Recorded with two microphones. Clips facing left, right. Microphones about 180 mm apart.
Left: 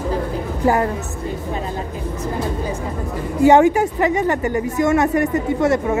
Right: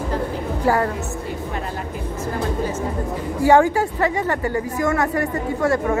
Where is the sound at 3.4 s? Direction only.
20° left (ahead or behind).